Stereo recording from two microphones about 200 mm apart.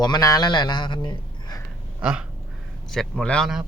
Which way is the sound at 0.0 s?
20° left (ahead or behind).